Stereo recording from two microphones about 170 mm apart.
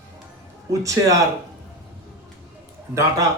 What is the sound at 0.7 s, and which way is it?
Speech, 20° right (ahead or behind).